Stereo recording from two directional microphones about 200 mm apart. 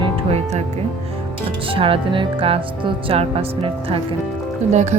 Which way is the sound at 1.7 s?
25° right (ahead or behind).